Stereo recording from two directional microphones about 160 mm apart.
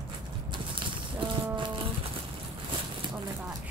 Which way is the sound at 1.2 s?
30° right (ahead or behind).